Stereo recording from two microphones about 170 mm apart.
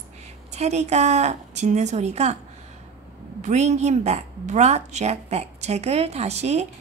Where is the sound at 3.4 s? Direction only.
45° right (ahead or behind).